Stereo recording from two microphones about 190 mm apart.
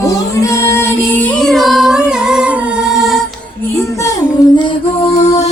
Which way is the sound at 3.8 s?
15° left (ahead or behind).